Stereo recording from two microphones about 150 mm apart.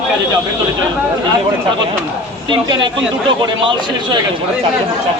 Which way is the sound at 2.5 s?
30° right (ahead or behind).